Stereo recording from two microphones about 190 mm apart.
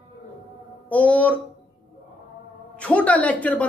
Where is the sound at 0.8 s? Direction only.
10° left (ahead or behind).